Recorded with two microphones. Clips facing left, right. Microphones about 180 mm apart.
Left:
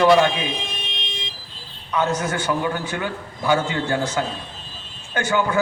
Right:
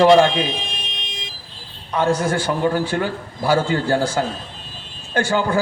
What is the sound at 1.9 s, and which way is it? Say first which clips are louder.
A man's voice: right 3 dB; 30° right (ahead or behind).